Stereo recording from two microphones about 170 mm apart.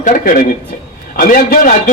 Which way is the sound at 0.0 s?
50° left (ahead or behind).